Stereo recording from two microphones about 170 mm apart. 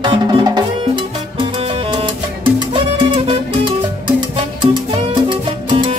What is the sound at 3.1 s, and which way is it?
Music, 30° right (ahead or behind).